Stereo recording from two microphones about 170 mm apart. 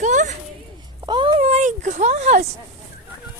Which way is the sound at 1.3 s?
40° right (ahead or behind).